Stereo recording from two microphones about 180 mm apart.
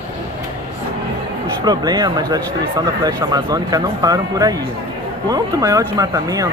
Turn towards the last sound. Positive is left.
turn(degrees=-20)  # may be behind; listen again after turning